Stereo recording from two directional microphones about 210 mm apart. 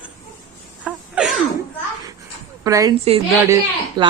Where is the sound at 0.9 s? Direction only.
5° right (ahead or behind).